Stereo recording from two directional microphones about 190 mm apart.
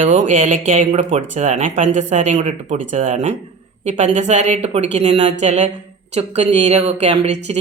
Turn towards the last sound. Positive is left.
turn(degrees=-35)  # may be behind; listen again after turning